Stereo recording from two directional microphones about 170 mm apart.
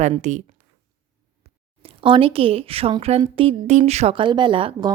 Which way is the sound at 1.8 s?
30° right (ahead or behind).